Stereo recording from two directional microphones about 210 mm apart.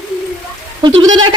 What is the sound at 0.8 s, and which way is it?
Goat, 20° right (ahead or behind).